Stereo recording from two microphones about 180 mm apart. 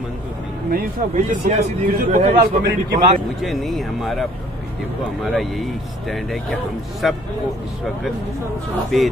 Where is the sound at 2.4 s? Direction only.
60° right (ahead or behind).